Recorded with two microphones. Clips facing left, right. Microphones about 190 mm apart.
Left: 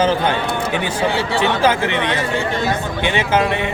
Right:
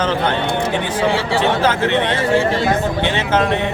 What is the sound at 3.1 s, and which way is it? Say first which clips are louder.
Speech: left 2 dB; 10° left (ahead or behind).